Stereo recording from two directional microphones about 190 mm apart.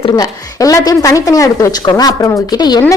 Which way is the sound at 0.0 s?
20° left (ahead or behind).